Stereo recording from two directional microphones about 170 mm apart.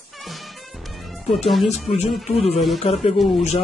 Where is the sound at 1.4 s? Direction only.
Centre (ahead or behind).